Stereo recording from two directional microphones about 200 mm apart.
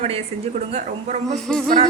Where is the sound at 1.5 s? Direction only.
Centre (ahead or behind).